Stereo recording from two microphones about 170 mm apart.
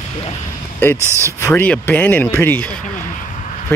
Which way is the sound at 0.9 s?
15° right (ahead or behind).